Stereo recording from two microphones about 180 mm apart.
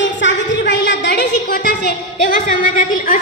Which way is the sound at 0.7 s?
80° left.